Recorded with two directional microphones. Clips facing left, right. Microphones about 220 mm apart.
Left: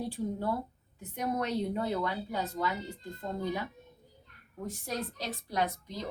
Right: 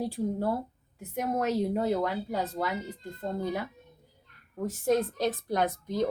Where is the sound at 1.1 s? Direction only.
40° right (ahead or behind).